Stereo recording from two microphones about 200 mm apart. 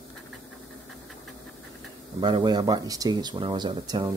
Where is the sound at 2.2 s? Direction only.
20° right (ahead or behind).